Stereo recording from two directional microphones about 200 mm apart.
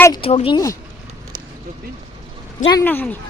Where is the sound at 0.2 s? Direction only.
30° left (ahead or behind).